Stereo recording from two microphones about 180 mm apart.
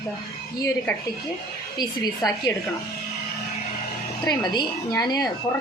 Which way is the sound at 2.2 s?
20° left (ahead or behind).